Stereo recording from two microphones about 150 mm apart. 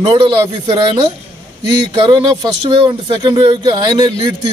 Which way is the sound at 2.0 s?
30° right (ahead or behind).